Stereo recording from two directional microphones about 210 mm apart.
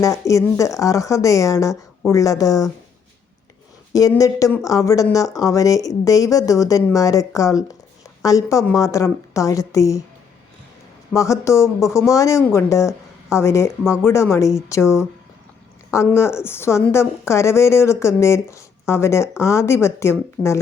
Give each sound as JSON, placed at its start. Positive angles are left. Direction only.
{"t": 0.0, "sound": "a woman's voice", "side_deg": 15}
{"t": 3.9, "sound": "a woman's voice", "side_deg": 15}
{"t": 11.1, "sound": "a woman's voice", "side_deg": 15}